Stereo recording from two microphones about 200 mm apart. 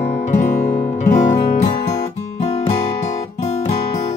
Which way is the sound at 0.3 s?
40° left (ahead or behind).